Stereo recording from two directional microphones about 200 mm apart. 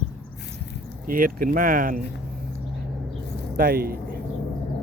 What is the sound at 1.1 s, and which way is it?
Speech, 45° right (ahead or behind).